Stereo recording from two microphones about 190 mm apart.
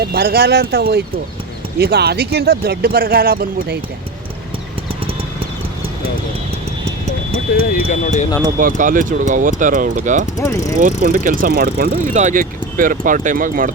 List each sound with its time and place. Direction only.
0.0 s speech: 55° right (ahead or behind)
7.5 s speech: 50° left (ahead or behind)
8.5 s speech: 45° right (ahead or behind)
10.3 s mechanisms: 15° left (ahead or behind)
11.0 s speech: 50° right (ahead or behind)
12.1 s speech: 40° right (ahead or behind)